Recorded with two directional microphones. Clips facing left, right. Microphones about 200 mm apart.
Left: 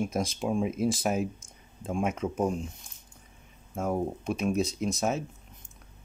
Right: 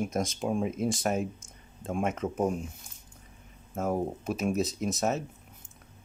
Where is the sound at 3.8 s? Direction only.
5° right (ahead or behind).